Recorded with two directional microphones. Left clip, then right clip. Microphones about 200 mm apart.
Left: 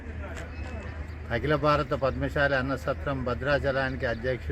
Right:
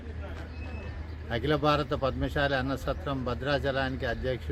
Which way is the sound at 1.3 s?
25° right (ahead or behind).